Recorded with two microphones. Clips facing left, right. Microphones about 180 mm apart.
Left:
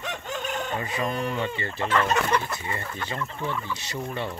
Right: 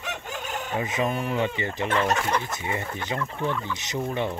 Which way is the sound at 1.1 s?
5° right (ahead or behind).